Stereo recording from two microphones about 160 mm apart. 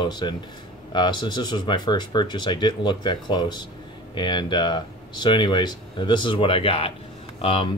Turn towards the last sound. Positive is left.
turn(degrees=35)  # may be behind; listen again after turning